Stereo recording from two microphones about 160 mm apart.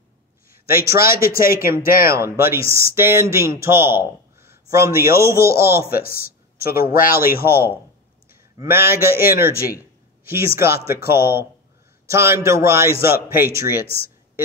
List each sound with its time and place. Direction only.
0.5 s a sound: 65° left (ahead or behind)
1.2 s speech: 65° left (ahead or behind)
2.2 s speech: 15° right (ahead or behind)
5.9 s speech: 70° left (ahead or behind)
8.5 s speech: 15° right (ahead or behind)
9.1 s speech: 70° left (ahead or behind)
10.2 s speech: 15° right (ahead or behind)